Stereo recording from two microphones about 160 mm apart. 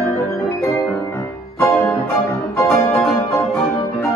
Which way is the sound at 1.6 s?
10° left (ahead or behind).